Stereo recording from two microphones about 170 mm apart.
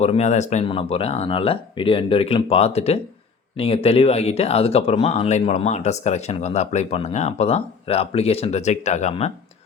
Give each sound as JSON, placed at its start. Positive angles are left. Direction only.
{"t": 0.0, "sound": "speech", "side_deg": 40}